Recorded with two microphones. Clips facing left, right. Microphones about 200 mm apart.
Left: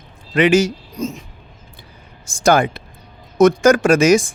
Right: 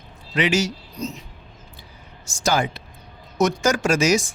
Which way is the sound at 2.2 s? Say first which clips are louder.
Left 7 dB; 55° left (ahead or behind).